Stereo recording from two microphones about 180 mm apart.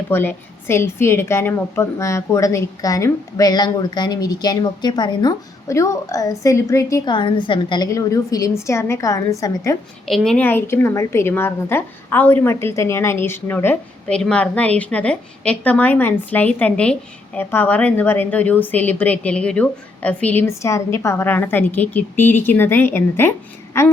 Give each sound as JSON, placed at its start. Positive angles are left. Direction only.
{"t": 0.1, "sound": "a woman's voice", "side_deg": 10}
{"t": 10.1, "sound": "a woman's voice", "side_deg": 5}